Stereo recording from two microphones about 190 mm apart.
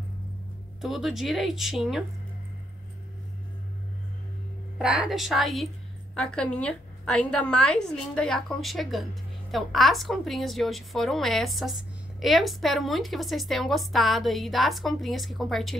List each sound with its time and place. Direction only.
0.7 s a woman's voice: centre (ahead or behind)
4.7 s a woman's voice: 5° right (ahead or behind)